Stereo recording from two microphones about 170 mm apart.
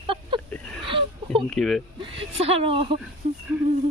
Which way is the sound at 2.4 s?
35° right (ahead or behind).